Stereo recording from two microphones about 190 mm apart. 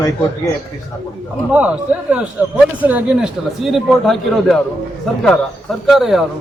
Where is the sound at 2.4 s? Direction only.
10° right (ahead or behind).